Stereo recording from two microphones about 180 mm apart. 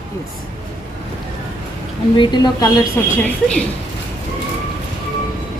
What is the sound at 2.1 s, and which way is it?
Speech, 25° left (ahead or behind).